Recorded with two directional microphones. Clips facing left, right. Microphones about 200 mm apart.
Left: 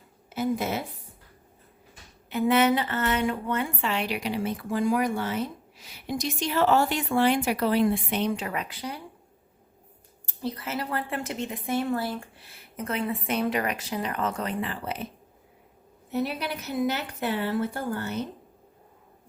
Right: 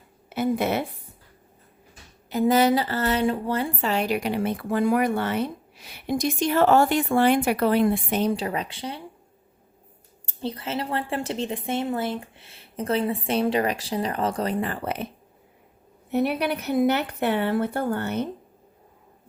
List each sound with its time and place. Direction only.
0.3 s speech: 65° right (ahead or behind)
2.3 s a woman's voice: 35° right (ahead or behind)
10.2 s speech: 25° right (ahead or behind); by 15.0 s 60° right (ahead or behind)
16.0 s a woman's voice: 60° right (ahead or behind)